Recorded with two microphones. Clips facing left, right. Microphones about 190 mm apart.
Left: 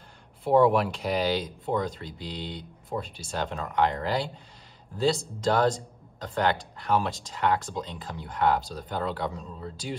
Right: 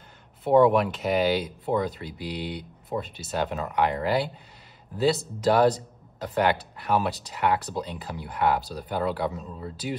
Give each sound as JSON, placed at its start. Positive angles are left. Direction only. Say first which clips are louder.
{"t": 0.4, "sound": "speech", "louder": "right 2 dB", "side_deg": 0}
{"t": 3.4, "sound": "speech", "louder": "left 1 dB", "side_deg": -20}
{"t": 5.5, "sound": "speech", "louder": "right 3 dB", "side_deg": -15}
{"t": 6.9, "sound": "speech", "louder": "right 1 dB", "side_deg": -15}